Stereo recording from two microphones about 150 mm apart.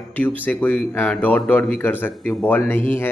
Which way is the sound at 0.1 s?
10° left (ahead or behind).